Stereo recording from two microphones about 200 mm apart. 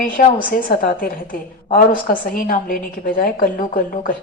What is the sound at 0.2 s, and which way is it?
A woman's voice, 50° left (ahead or behind).